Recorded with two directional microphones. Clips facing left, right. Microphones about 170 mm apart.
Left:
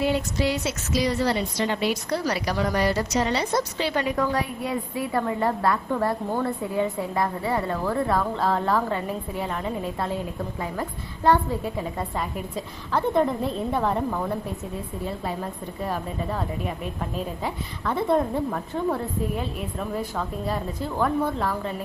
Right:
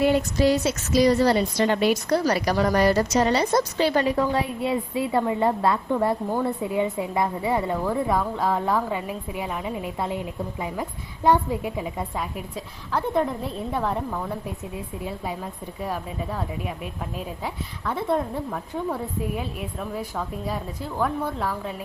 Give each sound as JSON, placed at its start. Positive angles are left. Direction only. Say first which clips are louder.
{"t": 0.0, "sound": "a woman's voice", "louder": "right 4 dB", "side_deg": -45}